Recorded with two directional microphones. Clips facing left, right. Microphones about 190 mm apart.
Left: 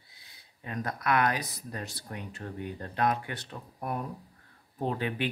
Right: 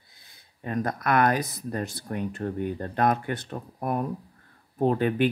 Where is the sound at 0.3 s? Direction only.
45° right (ahead or behind).